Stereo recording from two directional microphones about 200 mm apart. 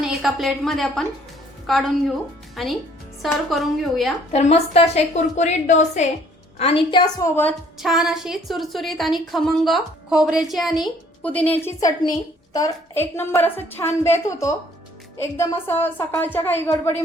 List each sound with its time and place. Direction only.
0.0 s a woman's voice: centre (ahead or behind)
4.3 s a woman's voice: 35° left (ahead or behind)
7.8 s a woman's voice: centre (ahead or behind)